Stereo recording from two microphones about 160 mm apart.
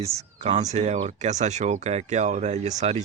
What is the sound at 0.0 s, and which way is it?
A man's voice, 40° right (ahead or behind).